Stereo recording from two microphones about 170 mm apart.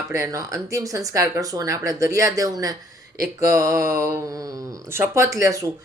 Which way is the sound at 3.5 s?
20° right (ahead or behind).